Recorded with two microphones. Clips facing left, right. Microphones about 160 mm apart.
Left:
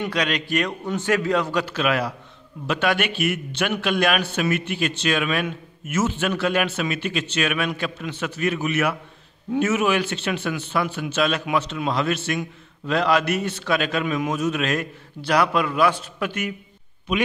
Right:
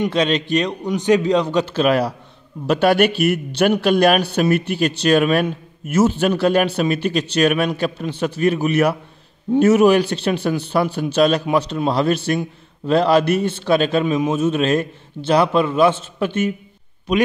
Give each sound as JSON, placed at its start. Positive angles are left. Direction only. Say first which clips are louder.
{"t": 0.0, "sound": "a man's voice", "louder": "right 6 dB", "side_deg": -25}
{"t": 17.1, "sound": "a man's voice", "louder": "right 6 dB", "side_deg": -40}